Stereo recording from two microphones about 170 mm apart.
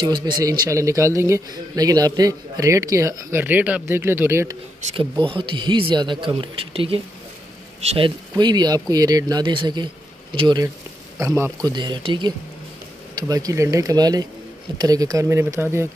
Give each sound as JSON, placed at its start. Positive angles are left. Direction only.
{"t": 0.0, "sound": "speech", "side_deg": -25}
{"t": 5.3, "sound": "speech", "side_deg": -30}
{"t": 11.1, "sound": "speech", "side_deg": -15}
{"t": 11.7, "sound": "speech", "side_deg": -25}